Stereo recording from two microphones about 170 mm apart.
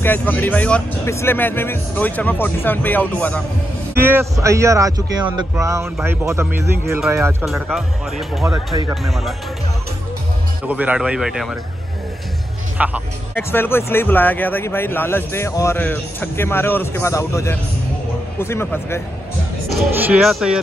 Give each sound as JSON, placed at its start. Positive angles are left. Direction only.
{"t": 0.0, "sound": "speech", "side_deg": 10}
{"t": 3.9, "sound": "speech", "side_deg": -15}
{"t": 7.4, "sound": "speech", "side_deg": 0}
{"t": 8.5, "sound": "speech", "side_deg": -20}
{"t": 9.0, "sound": "speech", "side_deg": 0}
{"t": 10.7, "sound": "speech", "side_deg": -10}
{"t": 12.7, "sound": "speech", "side_deg": -10}
{"t": 13.3, "sound": "speech", "side_deg": 15}
{"t": 19.7, "sound": "speech", "side_deg": 0}